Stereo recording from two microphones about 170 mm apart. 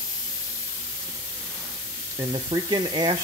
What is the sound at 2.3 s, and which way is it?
Speech, 25° right (ahead or behind).